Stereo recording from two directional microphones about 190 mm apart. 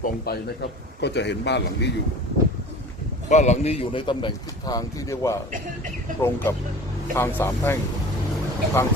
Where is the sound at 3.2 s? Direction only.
40° left (ahead or behind); by 5.4 s 15° left (ahead or behind).